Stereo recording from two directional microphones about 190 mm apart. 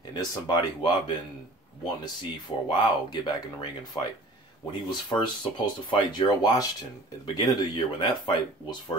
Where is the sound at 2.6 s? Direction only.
25° left (ahead or behind).